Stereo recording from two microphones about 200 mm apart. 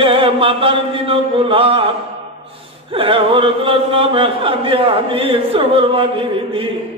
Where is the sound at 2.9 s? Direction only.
25° right (ahead or behind).